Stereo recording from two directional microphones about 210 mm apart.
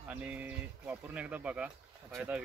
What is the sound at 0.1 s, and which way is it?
Speech, 5° right (ahead or behind).